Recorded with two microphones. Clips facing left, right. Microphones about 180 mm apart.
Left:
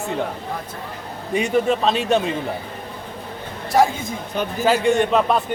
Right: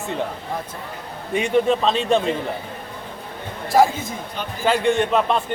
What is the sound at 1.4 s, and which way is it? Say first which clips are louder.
Speech: right 1 dB; 5° left (ahead or behind).